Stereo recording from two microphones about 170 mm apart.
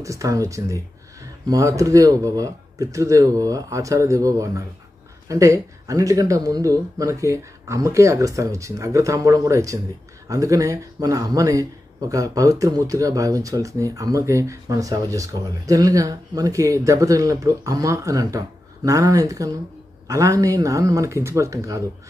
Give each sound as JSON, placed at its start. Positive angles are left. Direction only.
{"t": 0.0, "sound": "speech", "side_deg": -20}